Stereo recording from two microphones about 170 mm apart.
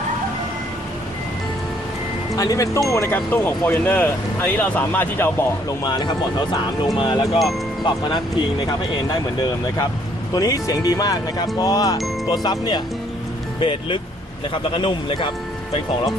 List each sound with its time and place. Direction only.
2.3 s speech: 20° left (ahead or behind)
7.0 s speech: 25° left (ahead or behind)
10.3 s speech: 20° left (ahead or behind)